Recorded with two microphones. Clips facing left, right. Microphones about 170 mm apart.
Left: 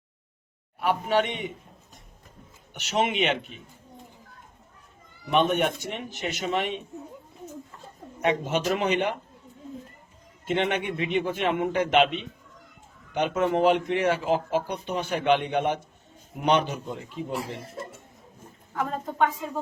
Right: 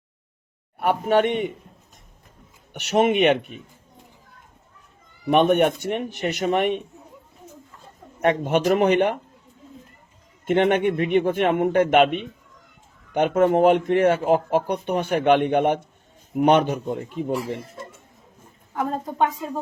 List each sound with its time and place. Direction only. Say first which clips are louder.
0.8 s speech: right 5 dB; 55° right (ahead or behind)
2.7 s a man's voice: right 7 dB; 60° right (ahead or behind)
5.3 s speech: right 6 dB; 55° right (ahead or behind)
8.2 s speech: right 5 dB; 55° right (ahead or behind)
10.4 s a man's voice: right 7 dB; 55° right (ahead or behind)